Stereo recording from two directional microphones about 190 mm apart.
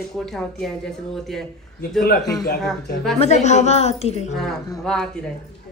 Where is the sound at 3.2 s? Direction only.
35° left (ahead or behind).